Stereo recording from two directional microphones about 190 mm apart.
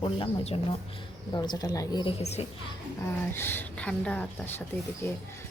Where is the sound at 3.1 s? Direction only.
10° left (ahead or behind).